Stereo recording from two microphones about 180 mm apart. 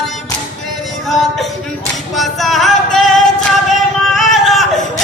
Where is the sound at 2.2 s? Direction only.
Centre (ahead or behind).